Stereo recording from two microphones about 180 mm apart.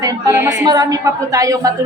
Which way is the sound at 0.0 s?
20° right (ahead or behind).